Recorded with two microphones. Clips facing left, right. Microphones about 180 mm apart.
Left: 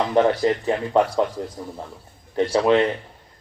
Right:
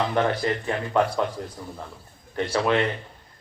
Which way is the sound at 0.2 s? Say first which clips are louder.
Left 9 dB; 20° left (ahead or behind).